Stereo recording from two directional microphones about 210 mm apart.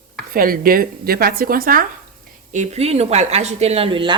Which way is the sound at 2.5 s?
35° right (ahead or behind).